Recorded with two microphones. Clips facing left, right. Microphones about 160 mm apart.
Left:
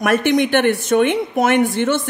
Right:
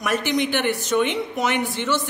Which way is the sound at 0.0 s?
55° left (ahead or behind).